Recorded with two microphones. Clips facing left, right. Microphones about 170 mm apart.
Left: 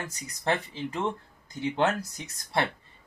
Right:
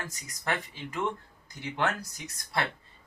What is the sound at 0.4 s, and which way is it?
Speech, 30° left (ahead or behind).